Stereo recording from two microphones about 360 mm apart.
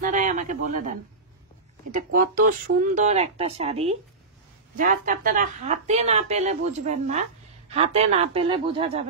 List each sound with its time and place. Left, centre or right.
0.0 s speech: right
2.0 s speech: right